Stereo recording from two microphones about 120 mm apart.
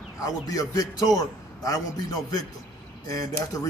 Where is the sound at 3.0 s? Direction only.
30° left (ahead or behind).